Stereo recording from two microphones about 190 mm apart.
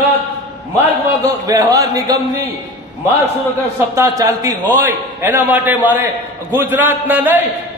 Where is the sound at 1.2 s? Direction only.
15° right (ahead or behind).